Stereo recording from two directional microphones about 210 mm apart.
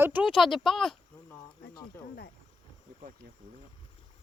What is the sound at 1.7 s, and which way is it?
Snake, 50° left (ahead or behind).